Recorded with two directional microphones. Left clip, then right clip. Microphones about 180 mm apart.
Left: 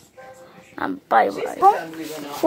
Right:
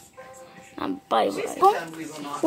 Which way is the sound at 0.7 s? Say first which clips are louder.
Left 6 dB; centre (ahead or behind).